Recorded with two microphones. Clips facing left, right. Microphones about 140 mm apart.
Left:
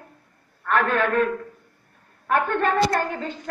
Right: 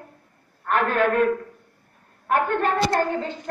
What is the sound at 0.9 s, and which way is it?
Speech, 15° right (ahead or behind).